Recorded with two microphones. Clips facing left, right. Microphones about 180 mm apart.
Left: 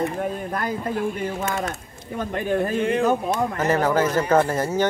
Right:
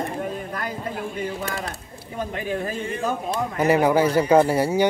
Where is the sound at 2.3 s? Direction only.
50° left (ahead or behind).